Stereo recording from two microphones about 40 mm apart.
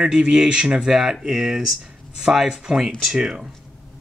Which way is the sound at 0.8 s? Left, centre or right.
Centre.